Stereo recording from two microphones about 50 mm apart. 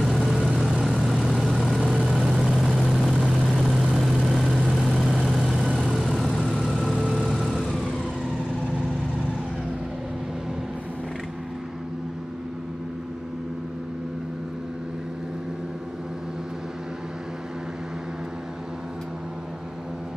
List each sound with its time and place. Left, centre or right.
0.0 s vehicle: centre